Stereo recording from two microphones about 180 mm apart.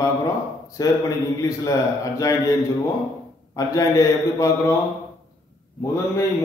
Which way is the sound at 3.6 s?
20° left (ahead or behind).